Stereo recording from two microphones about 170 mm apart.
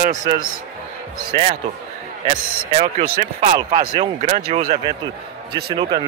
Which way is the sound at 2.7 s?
35° right (ahead or behind).